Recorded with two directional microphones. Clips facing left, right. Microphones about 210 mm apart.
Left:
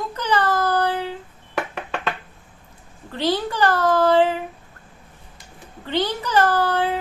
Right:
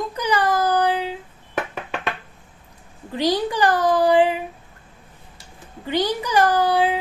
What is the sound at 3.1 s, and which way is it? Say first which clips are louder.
A woman's voice: right 2 dB; 15° right (ahead or behind).